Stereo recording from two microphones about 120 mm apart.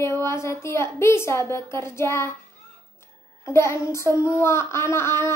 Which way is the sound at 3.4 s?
25° left (ahead or behind).